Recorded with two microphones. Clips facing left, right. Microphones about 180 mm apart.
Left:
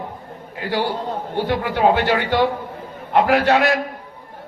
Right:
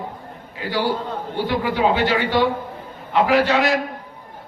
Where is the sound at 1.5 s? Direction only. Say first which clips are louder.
Left 2 dB; 60° left (ahead or behind).